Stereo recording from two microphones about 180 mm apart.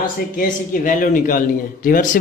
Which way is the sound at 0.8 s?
50° left (ahead or behind).